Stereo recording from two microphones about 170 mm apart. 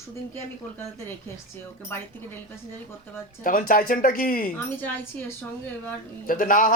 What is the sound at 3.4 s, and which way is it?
Speech, 55° left (ahead or behind).